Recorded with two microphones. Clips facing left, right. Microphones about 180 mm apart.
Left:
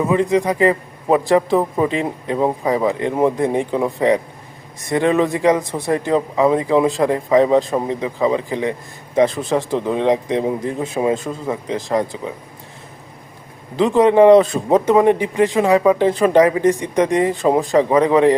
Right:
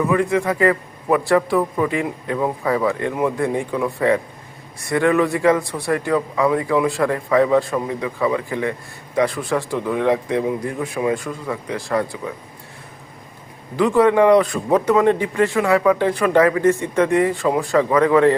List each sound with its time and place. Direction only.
0.0 s a man's voice: 20° left (ahead or behind)
13.7 s a man's voice: 20° left (ahead or behind)